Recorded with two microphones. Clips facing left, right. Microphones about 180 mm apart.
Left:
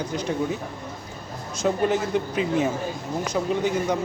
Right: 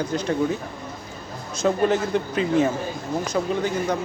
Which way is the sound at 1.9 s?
10° left (ahead or behind).